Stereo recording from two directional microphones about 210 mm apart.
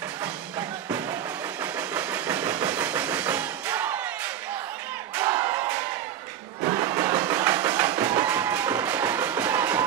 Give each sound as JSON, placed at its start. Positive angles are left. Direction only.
{"t": 0.6, "sound": "music", "side_deg": -20}
{"t": 1.6, "sound": "train", "side_deg": -10}
{"t": 5.1, "sound": "battle cry", "side_deg": -10}
{"t": 6.6, "sound": "music", "side_deg": -15}